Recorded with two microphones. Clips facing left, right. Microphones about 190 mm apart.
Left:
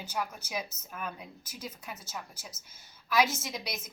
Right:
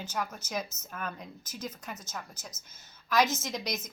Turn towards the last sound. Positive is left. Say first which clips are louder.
# right 3 dB
turn(degrees=10)  # may be behind; listen again after turning